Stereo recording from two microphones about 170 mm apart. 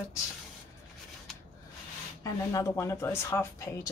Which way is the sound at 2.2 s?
20° left (ahead or behind).